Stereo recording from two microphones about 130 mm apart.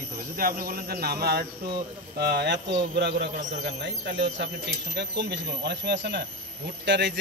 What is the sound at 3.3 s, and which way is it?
Speech, 70° right (ahead or behind).